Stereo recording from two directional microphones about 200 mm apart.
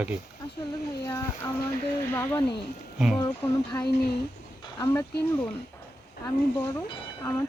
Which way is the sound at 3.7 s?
15° left (ahead or behind).